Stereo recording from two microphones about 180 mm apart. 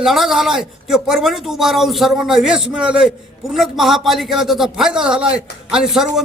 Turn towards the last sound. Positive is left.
turn(degrees=-5)  # may be behind; listen again after turning